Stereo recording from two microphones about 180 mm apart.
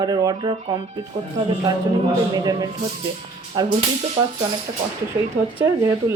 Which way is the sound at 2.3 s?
20° right (ahead or behind).